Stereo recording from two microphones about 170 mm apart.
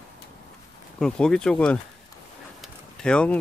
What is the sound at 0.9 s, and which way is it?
Speech, 5° left (ahead or behind).